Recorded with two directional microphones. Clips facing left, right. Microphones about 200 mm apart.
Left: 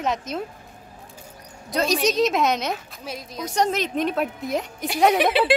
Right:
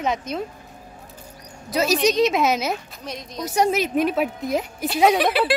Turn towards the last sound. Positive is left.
turn(degrees=25)  # may be behind; listen again after turning